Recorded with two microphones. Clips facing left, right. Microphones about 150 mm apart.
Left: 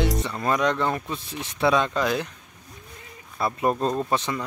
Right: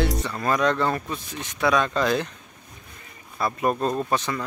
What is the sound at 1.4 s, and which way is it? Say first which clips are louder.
Speech: left 1 dB; 30° left (ahead or behind).